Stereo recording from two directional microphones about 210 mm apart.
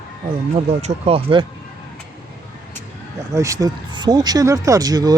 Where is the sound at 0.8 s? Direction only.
30° right (ahead or behind).